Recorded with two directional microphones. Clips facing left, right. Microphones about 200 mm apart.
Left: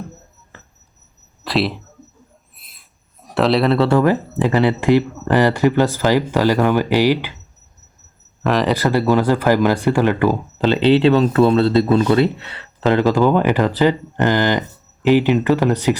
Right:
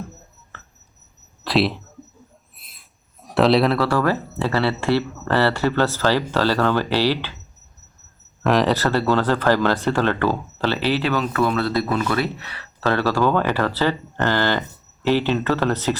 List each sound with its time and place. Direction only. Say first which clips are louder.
1.5 s speech: even; centre (ahead or behind)
2.6 s a sound: even; centre (ahead or behind)
3.8 s speech: left 5 dB; 20° left (ahead or behind)
8.4 s speech: even; centre (ahead or behind)
8.7 s speech: left 3 dB; 15° left (ahead or behind)